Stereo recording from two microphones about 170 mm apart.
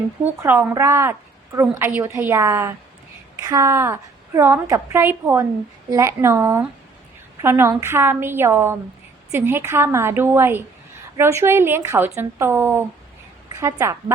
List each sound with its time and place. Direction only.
0.2 s a woman's voice: 10° right (ahead or behind)